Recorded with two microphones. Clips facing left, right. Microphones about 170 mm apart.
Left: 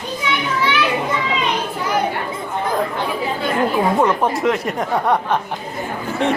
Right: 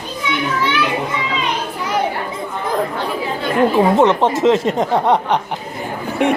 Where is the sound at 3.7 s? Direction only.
25° right (ahead or behind).